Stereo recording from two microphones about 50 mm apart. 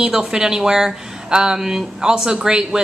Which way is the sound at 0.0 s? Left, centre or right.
Centre.